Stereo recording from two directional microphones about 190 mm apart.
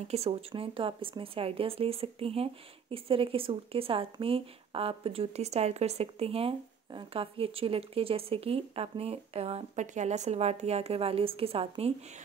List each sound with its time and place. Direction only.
0.1 s speech: 30° right (ahead or behind)